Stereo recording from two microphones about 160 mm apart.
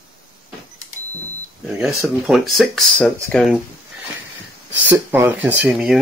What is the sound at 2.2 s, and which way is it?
Speech, centre (ahead or behind).